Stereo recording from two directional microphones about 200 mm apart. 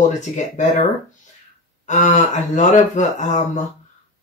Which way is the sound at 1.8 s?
35° left (ahead or behind).